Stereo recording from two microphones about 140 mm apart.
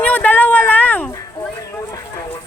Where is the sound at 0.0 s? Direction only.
10° left (ahead or behind).